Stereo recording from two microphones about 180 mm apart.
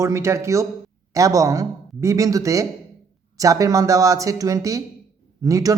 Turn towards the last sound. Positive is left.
turn(degrees=-20)  # may be behind; listen again after turning